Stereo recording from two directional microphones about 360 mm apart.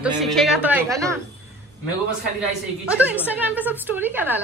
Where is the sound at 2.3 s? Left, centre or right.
Centre.